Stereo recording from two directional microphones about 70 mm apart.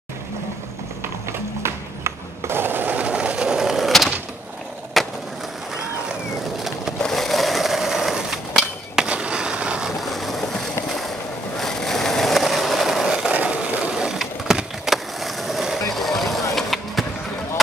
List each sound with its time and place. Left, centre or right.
1.6 s sewing machine: right; by 3.9 s centre
5.0 s skateboard: centre
7.0 s a sound: centre
10.0 s boat: centre
11.6 s skateboard: centre
13.3 s skateboard: centre
15.9 s vehicle: centre
16.5 s skateboard: centre